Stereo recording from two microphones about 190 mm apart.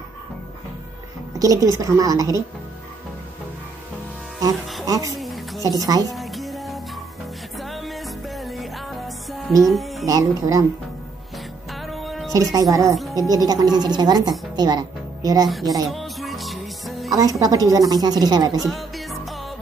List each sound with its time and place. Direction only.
1.4 s a woman's voice: 15° right (ahead or behind)
4.8 s a woman's voice: 20° right (ahead or behind)
5.1 s a sound: centre (ahead or behind)
5.6 s a woman's voice: 20° right (ahead or behind)
6.0 s music: centre (ahead or behind)
9.7 s speech: centre (ahead or behind)
10.0 s a woman's voice: 15° right (ahead or behind)
11.7 s music: centre (ahead or behind)
12.3 s a woman's voice: 20° right (ahead or behind)
15.9 s music: centre (ahead or behind)
17.1 s a woman's voice: 20° right (ahead or behind)
18.6 s music: centre (ahead or behind)